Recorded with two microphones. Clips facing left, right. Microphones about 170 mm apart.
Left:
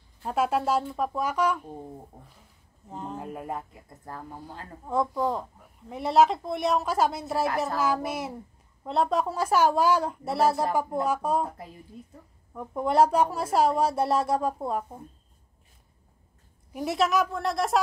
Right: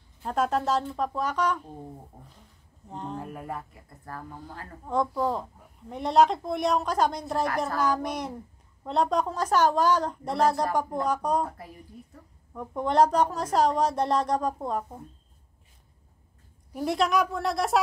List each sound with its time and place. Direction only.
0.2 s a woman's voice: 10° left (ahead or behind)
2.9 s a woman's voice: 5° left (ahead or behind)
3.2 s speech: 20° left (ahead or behind)
4.8 s a woman's voice: centre (ahead or behind)
12.5 s a woman's voice: 5° left (ahead or behind)
16.7 s a woman's voice: 5° left (ahead or behind)